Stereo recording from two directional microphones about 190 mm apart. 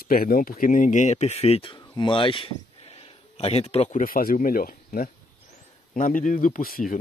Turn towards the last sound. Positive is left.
turn(degrees=50)  # may be behind; listen again after turning